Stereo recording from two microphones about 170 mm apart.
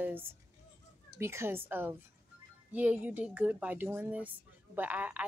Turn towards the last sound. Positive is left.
turn(degrees=-10)  # may be behind; listen again after turning